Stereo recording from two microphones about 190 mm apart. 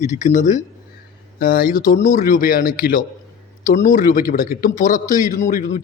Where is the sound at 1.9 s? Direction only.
40° left (ahead or behind).